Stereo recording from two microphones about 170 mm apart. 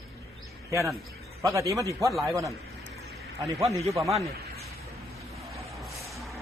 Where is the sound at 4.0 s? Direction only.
Centre (ahead or behind).